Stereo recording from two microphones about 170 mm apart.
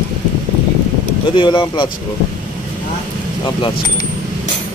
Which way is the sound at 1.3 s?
30° left (ahead or behind).